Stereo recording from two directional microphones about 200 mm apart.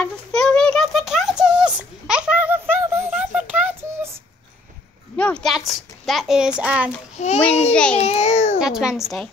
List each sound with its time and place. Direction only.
0.0 s a sound: 5° left (ahead or behind)
5.1 s a sound: 5° left (ahead or behind)
7.2 s a child's voice: 35° left (ahead or behind)
7.7 s a child's voice: 5° left (ahead or behind)
8.0 s a child's voice: 35° left (ahead or behind)
8.5 s a child's voice: 5° right (ahead or behind)